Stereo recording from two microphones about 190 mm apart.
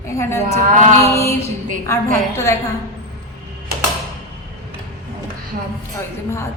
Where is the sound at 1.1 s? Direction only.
15° left (ahead or behind).